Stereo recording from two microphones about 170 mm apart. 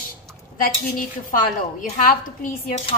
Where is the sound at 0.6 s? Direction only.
55° left (ahead or behind).